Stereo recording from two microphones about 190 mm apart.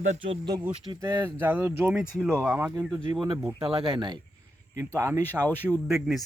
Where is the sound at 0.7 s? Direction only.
20° right (ahead or behind).